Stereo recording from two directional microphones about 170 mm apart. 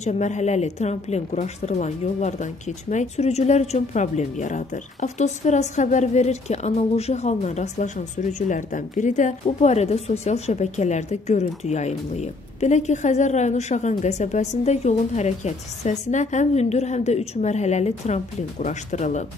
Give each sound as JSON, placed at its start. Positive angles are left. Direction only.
{"t": 0.0, "sound": "a woman's voice", "side_deg": 45}